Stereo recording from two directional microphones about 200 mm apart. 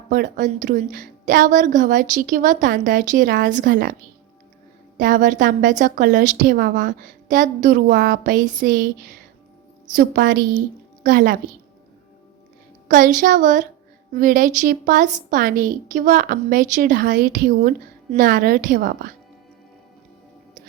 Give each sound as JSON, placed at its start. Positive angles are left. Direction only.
{"t": 0.1, "sound": "a woman's voice", "side_deg": -40}
{"t": 4.9, "sound": "a woman's voice", "side_deg": -40}
{"t": 12.9, "sound": "a woman's voice", "side_deg": -40}